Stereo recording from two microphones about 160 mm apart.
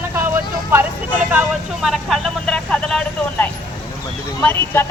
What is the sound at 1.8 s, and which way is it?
Vehicle, centre (ahead or behind).